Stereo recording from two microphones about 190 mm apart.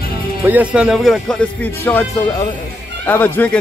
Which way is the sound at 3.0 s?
10° left (ahead or behind).